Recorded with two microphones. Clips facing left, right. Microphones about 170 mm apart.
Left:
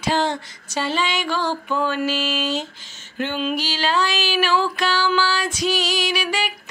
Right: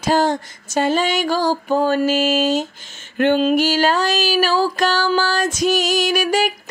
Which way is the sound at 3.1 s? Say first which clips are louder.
Right 9 dB; 55° right (ahead or behind).